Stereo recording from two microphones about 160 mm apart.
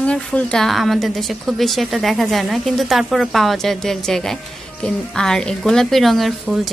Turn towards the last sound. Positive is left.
turn(degrees=0)  # may be behind; listen again after turning